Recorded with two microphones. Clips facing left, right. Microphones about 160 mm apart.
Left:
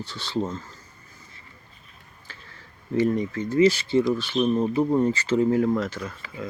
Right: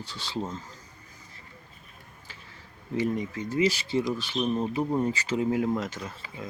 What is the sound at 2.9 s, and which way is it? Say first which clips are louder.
Speech: left 5 dB; 10° right (ahead or behind).